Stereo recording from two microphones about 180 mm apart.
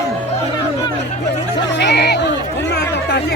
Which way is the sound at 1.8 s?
70° left (ahead or behind).